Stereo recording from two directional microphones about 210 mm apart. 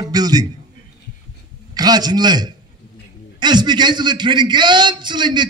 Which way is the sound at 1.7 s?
20° right (ahead or behind).